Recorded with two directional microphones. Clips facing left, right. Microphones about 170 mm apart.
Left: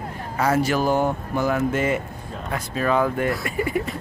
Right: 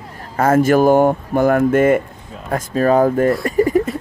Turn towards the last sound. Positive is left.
turn(degrees=-40)  # may be behind; listen again after turning